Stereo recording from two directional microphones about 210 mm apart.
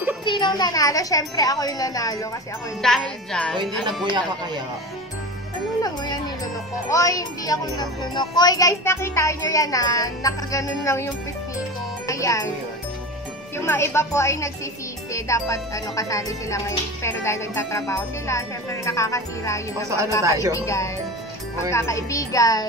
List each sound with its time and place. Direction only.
0.2 s speech: 20° left (ahead or behind)
2.8 s wind chime: centre (ahead or behind)
3.8 s speech: 20° right (ahead or behind)
5.8 s speech: 20° left (ahead or behind)
12.1 s music: 15° left (ahead or behind)
13.6 s speech: 10° left (ahead or behind)
20.2 s speech: 15° right (ahead or behind)
20.5 s speech: 15° left (ahead or behind)